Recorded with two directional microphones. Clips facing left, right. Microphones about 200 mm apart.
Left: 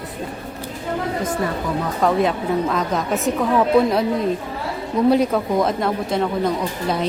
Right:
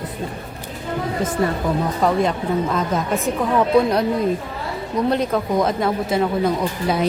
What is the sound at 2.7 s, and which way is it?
A woman's voice, centre (ahead or behind).